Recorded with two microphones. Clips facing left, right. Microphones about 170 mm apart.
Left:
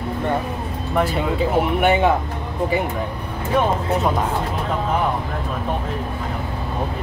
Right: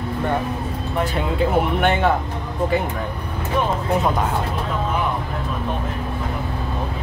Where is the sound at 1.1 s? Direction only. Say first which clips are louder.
Even; centre (ahead or behind).